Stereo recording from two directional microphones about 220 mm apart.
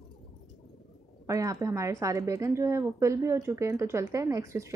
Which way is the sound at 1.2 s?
15° right (ahead or behind).